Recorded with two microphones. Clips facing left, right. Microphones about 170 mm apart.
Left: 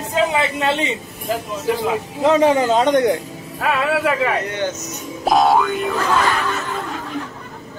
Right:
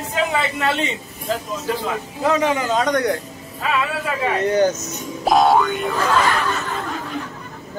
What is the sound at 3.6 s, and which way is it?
Speech, 70° left (ahead or behind).